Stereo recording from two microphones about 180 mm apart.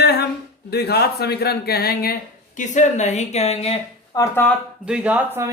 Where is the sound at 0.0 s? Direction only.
65° left (ahead or behind).